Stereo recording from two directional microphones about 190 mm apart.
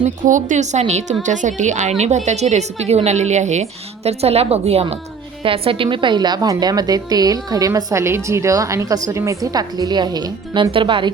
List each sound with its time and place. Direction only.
0.0 s a woman's voice: 40° right (ahead or behind); by 11.1 s 25° right (ahead or behind)